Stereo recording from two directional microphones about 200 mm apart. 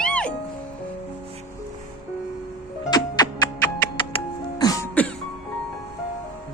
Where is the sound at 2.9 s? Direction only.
20° left (ahead or behind).